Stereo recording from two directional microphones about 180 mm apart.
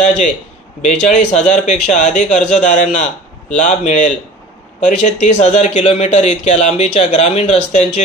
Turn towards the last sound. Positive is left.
turn(degrees=35)  # may be behind; listen again after turning